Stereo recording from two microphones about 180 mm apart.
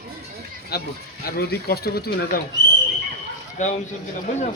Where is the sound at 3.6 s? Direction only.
40° left (ahead or behind).